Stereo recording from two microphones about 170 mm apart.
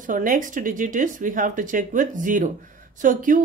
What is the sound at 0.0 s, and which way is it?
Speech, 50° right (ahead or behind).